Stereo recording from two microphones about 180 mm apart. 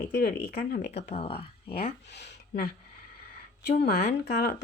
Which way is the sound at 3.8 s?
55° left (ahead or behind).